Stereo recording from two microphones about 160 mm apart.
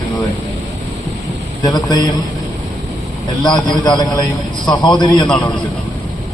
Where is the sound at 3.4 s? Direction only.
25° left (ahead or behind).